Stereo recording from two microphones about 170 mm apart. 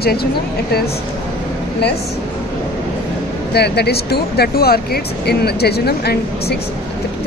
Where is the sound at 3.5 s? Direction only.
75° left (ahead or behind).